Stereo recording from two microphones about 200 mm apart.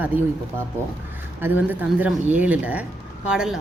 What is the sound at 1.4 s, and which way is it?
A woman's voice, 10° right (ahead or behind).